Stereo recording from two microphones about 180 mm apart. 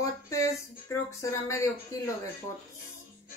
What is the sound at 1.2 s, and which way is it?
Speech, 15° left (ahead or behind).